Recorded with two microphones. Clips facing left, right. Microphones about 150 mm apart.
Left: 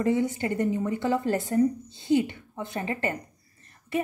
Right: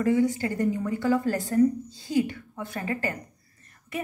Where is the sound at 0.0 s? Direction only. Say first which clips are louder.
Right 2 dB; 20° left (ahead or behind).